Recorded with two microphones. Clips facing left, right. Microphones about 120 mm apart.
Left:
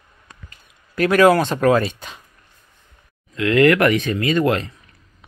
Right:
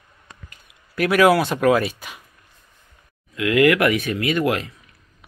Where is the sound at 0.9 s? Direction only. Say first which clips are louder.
Left 2 dB; 5° right (ahead or behind).